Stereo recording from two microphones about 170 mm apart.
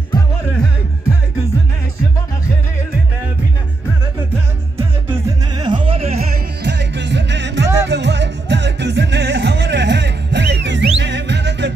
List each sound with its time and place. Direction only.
5.6 s music: 30° right (ahead or behind)
6.6 s music: 90° right